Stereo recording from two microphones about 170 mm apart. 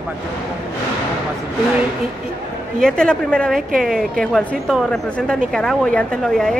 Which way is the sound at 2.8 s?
5° left (ahead or behind).